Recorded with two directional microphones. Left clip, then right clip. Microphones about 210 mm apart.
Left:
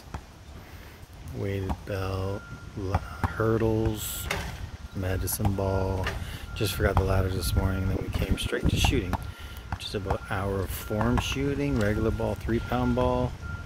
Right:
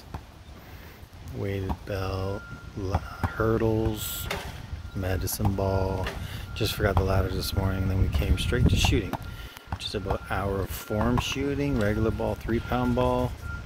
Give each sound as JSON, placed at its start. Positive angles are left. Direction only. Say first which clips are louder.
{"t": 1.4, "sound": "speech", "louder": "even", "side_deg": 0}
{"t": 3.3, "sound": "speech", "louder": "right 1 dB", "side_deg": 0}